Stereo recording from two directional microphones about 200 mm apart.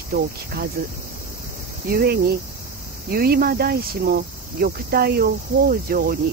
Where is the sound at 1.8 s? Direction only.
50° right (ahead or behind).